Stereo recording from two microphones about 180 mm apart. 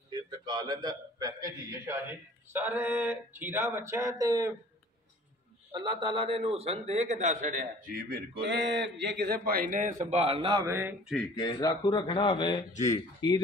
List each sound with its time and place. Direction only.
0.1 s a sound: 25° right (ahead or behind)
5.7 s a man's voice: 25° right (ahead or behind); by 9.9 s 45° right (ahead or behind)
10.0 s a man's voice: 35° right (ahead or behind)
10.6 s a sound: 10° right (ahead or behind)
11.3 s speech: 20° left (ahead or behind)
12.7 s speech: 40° left (ahead or behind)